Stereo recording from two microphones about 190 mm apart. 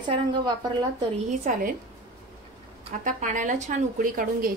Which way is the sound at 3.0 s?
40° right (ahead or behind).